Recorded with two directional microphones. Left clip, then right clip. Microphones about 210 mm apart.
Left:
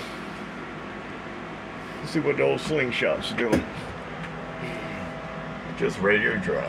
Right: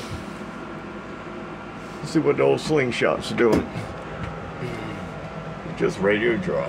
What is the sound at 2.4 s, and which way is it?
Speech, 20° right (ahead or behind).